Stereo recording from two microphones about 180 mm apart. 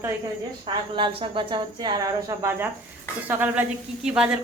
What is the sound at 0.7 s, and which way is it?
A woman's voice, 25° right (ahead or behind).